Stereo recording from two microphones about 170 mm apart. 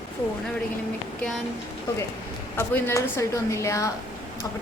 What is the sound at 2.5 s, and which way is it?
A woman's voice, 15° left (ahead or behind).